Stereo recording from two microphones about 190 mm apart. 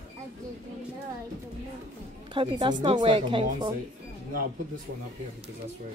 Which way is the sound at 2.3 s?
25° right (ahead or behind).